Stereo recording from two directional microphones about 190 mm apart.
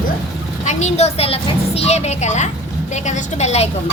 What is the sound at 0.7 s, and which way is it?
A woman's voice, 40° left (ahead or behind).